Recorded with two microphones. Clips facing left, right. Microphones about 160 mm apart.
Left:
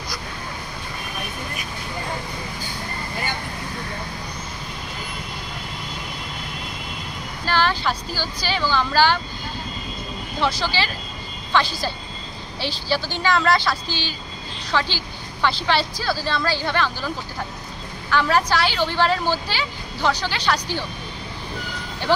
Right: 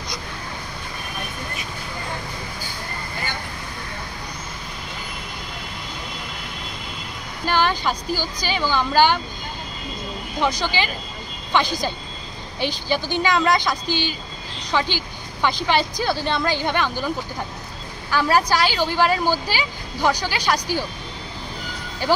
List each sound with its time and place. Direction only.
7.4 s a sound: 15° right (ahead or behind)
8.2 s speech: 15° right (ahead or behind)
10.4 s speech: 15° right (ahead or behind)
13.8 s speech: 55° right (ahead or behind)
14.7 s speech: 15° right (ahead or behind)
18.1 s speech: 10° right (ahead or behind)